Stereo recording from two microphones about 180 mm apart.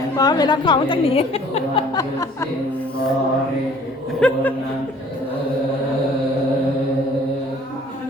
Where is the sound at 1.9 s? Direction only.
20° left (ahead or behind).